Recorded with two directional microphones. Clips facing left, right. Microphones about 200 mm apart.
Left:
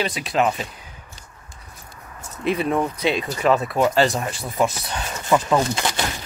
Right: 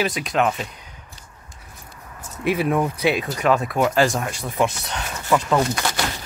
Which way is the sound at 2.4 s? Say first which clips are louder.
Right 1 dB; 5° right (ahead or behind).